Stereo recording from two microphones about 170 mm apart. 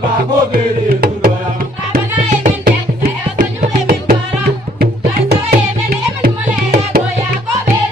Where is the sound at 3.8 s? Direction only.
60° right (ahead or behind).